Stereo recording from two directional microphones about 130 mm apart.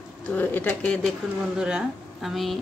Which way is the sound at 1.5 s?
5° right (ahead or behind).